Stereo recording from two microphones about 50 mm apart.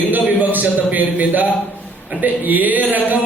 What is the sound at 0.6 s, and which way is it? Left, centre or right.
A man's voice, right.